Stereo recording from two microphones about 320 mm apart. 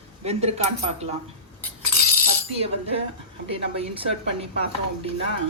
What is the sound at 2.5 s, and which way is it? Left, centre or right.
Speech, centre.